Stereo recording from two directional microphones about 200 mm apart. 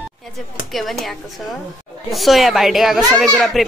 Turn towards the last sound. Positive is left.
turn(degrees=0)  # may be behind; listen again after turning